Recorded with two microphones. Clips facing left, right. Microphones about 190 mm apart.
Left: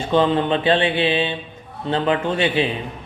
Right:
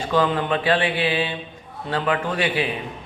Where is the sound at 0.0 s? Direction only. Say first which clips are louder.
Left 3 dB; 25° left (ahead or behind).